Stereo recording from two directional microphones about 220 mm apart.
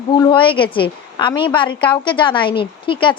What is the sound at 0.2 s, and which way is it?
A woman's voice, 20° left (ahead or behind).